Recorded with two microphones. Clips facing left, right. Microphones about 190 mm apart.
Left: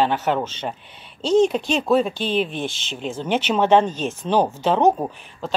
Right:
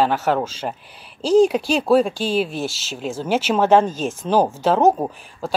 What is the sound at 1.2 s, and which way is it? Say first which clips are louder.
Speech: right 2 dB; 30° right (ahead or behind).